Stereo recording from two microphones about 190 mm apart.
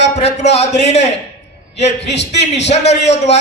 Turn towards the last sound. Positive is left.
turn(degrees=35)  # may be behind; listen again after turning